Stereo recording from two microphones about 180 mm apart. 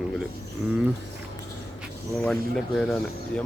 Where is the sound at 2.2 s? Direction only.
Centre (ahead or behind).